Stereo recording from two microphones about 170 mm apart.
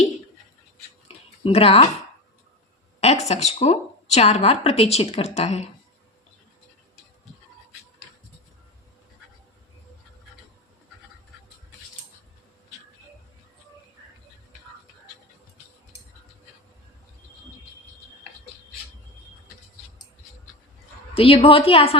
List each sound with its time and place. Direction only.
1.0 s a sound: 35° left (ahead or behind)
3.0 s a woman's voice: 40° left (ahead or behind)
21.2 s a woman's voice: 35° left (ahead or behind)